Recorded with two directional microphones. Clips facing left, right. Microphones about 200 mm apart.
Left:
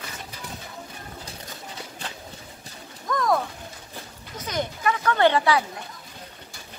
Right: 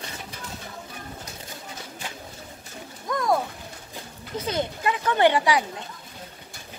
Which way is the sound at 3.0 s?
25° right (ahead or behind).